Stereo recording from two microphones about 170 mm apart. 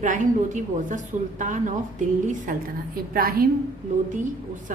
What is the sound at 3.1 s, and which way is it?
Speech, 60° right (ahead or behind).